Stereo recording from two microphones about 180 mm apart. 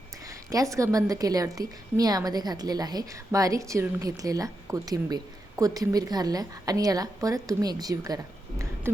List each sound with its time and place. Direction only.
0.3 s a woman's voice: 20° right (ahead or behind)